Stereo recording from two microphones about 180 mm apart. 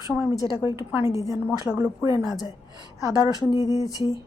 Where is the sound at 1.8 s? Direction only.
20° right (ahead or behind).